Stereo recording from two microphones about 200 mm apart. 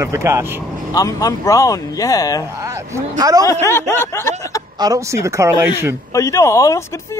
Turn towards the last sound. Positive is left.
turn(degrees=15)  # may be behind; listen again after turning